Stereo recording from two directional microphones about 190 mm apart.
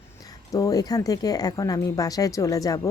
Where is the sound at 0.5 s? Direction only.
20° left (ahead or behind).